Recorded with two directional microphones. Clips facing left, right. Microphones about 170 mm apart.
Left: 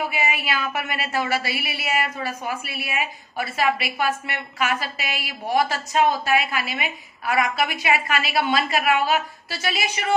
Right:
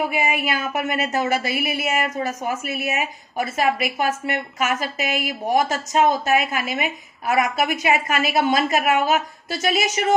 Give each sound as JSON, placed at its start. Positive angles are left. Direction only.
{"t": 0.1, "sound": "a woman's voice", "side_deg": -50}